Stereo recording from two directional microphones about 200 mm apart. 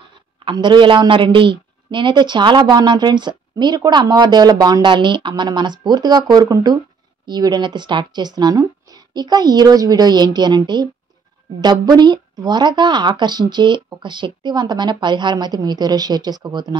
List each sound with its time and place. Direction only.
0.5 s speech: 25° right (ahead or behind)